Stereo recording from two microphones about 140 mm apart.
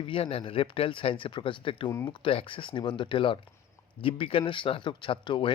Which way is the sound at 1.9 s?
20° left (ahead or behind).